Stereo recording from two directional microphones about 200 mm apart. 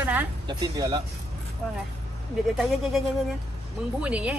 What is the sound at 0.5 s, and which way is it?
Speech, 20° right (ahead or behind).